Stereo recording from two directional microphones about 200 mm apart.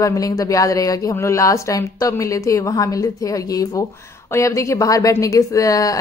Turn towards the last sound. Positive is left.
turn(degrees=15)  # may be behind; listen again after turning